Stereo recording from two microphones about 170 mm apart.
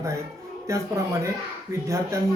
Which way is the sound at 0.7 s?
15° right (ahead or behind).